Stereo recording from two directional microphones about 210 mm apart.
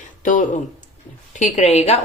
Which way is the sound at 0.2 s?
35° left (ahead or behind).